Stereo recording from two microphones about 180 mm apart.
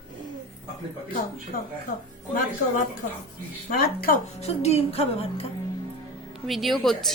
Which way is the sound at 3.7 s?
55° left (ahead or behind).